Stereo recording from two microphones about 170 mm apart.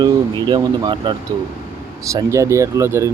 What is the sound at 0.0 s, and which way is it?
Speech, 25° right (ahead or behind).